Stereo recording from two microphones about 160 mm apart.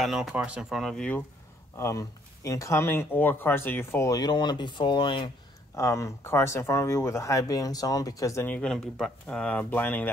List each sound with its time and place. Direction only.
0.0 s speech: centre (ahead or behind)
1.8 s speech: 20° left (ahead or behind)
5.8 s speech: 20° left (ahead or behind)